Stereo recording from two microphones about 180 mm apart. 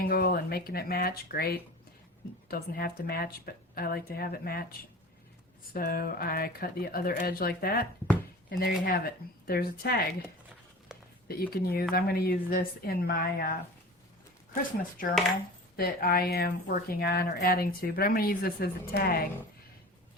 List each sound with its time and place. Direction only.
0.0 s speech: 55° left (ahead or behind)
5.7 s speech: 55° left (ahead or behind)
10.9 s a sound: 5° right (ahead or behind)
11.5 s speech: 60° left (ahead or behind)
15.7 s speech: 55° left (ahead or behind)